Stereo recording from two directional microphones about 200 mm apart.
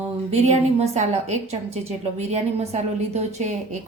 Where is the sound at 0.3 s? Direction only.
35° right (ahead or behind).